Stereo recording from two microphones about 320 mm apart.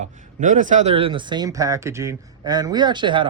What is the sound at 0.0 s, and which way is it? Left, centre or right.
A man's voice, right.